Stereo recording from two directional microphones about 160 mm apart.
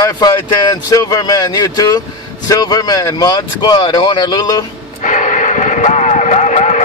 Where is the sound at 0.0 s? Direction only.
25° left (ahead or behind).